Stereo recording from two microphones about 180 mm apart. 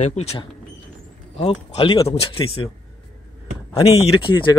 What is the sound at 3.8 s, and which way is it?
Speech, 30° left (ahead or behind).